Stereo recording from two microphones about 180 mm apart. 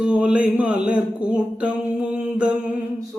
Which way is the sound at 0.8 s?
5° right (ahead or behind).